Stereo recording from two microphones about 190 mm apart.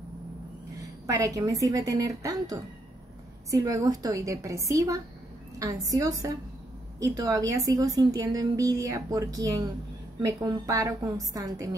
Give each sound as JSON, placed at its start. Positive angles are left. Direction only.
{"t": 1.0, "sound": "a woman's voice", "side_deg": -15}